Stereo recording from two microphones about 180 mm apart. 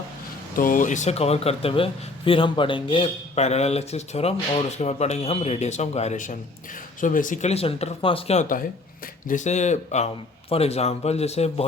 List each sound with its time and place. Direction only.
0.5 s speech: 50° left (ahead or behind)